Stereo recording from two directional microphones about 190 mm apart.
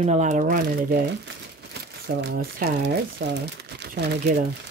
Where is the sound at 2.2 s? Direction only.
55° right (ahead or behind).